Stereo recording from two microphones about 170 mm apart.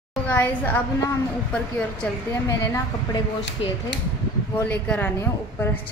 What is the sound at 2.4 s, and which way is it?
Speech, 20° left (ahead or behind).